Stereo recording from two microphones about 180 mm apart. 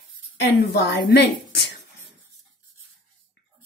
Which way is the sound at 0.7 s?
70° left (ahead or behind).